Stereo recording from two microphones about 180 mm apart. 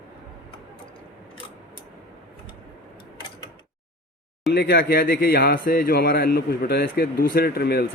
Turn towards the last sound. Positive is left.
turn(degrees=60)  # may be behind; listen again after turning